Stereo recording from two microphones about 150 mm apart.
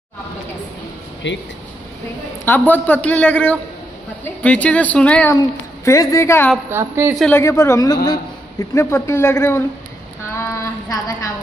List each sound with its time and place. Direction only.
2.4 s a man's voice: 10° left (ahead or behind)
5.9 s a man's voice: 20° left (ahead or behind)
6.7 s a woman's voice: 15° right (ahead or behind)
7.3 s a man's voice: 20° left (ahead or behind)
10.3 s a sound: 20° left (ahead or behind)